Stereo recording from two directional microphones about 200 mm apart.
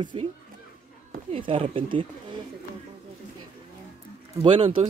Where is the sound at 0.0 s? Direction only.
25° right (ahead or behind).